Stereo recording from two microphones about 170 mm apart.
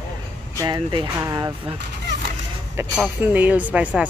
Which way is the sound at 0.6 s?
25° right (ahead or behind).